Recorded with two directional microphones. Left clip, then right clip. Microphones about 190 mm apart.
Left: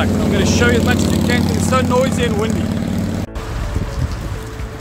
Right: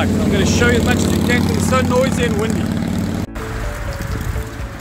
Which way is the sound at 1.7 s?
Centre (ahead or behind).